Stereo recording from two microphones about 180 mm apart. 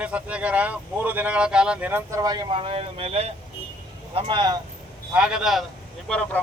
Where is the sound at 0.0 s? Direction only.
5° right (ahead or behind).